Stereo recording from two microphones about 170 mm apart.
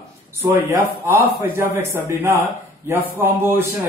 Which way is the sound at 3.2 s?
15° right (ahead or behind).